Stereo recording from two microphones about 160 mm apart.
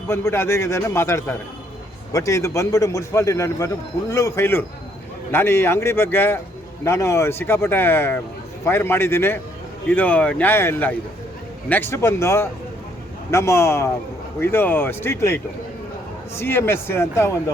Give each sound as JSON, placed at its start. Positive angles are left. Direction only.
{"t": 0.1, "sound": "a man's voice", "side_deg": 15}
{"t": 16.4, "sound": "speech", "side_deg": 15}